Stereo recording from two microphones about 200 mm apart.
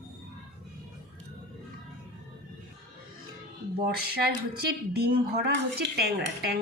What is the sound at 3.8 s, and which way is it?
Speech, 50° right (ahead or behind).